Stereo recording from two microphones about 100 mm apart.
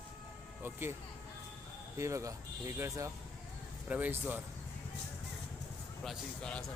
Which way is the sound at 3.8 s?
15° right (ahead or behind).